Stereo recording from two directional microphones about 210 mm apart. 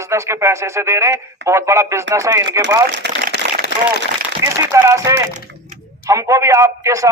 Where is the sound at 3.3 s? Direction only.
50° left (ahead or behind).